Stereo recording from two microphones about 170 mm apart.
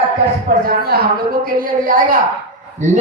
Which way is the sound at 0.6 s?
65° right (ahead or behind).